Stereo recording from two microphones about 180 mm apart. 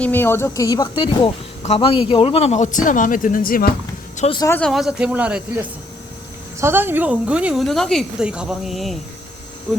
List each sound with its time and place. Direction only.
0.0 s speech: 10° left (ahead or behind); by 3.7 s 50° left (ahead or behind)
4.4 s speech: 15° left (ahead or behind)
4.6 s a woman's voice: centre (ahead or behind)